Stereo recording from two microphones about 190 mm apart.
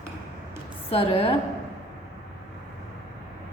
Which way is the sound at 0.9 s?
30° left (ahead or behind).